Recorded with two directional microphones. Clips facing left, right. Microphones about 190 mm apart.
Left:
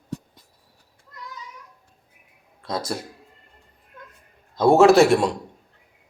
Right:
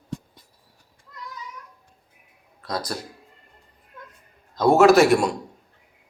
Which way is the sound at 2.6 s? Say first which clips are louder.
Left 1 dB; 25° left (ahead or behind).